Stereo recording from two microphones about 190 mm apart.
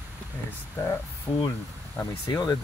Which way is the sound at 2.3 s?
20° left (ahead or behind).